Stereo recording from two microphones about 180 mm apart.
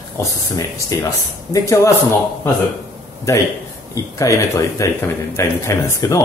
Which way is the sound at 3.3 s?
15° left (ahead or behind).